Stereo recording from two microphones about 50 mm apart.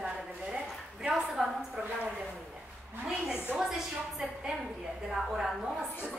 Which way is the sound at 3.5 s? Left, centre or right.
Centre.